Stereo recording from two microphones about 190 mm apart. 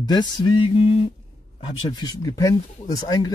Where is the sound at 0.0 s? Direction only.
20° left (ahead or behind).